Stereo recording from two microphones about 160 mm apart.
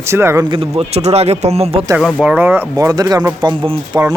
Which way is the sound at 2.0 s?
5° right (ahead or behind).